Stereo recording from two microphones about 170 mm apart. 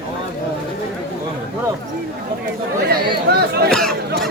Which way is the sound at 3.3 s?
70° right (ahead or behind).